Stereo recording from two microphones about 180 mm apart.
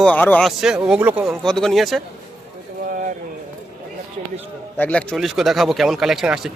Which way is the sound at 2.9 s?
50° right (ahead or behind).